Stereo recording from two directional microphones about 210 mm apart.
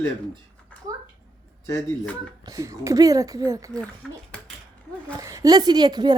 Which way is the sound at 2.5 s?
15° right (ahead or behind).